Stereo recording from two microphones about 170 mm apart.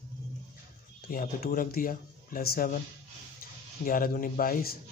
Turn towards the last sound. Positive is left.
turn(degrees=55)  # may be behind; listen again after turning